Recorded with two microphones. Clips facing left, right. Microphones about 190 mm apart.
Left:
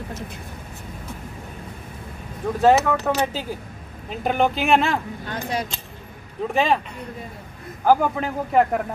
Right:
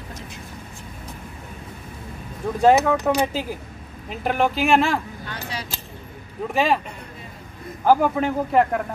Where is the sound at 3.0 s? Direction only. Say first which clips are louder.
Right 2 dB; 10° right (ahead or behind).